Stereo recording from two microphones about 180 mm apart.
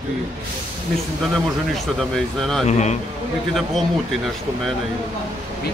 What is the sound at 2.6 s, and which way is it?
Speech, 40° left (ahead or behind).